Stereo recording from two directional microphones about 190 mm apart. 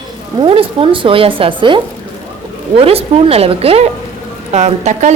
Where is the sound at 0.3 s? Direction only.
25° right (ahead or behind).